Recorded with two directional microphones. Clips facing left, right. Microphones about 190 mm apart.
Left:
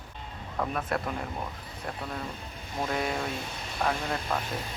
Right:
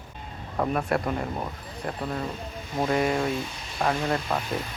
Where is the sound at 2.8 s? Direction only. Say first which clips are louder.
Right 6 dB; 55° right (ahead or behind).